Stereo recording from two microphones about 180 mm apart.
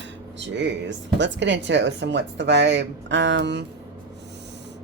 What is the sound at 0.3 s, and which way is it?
Speech, 80° right.